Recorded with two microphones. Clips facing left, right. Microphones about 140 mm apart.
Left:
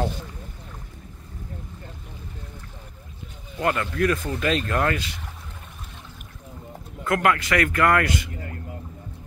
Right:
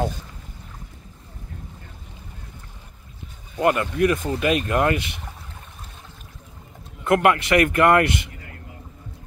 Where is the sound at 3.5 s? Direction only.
20° right (ahead or behind).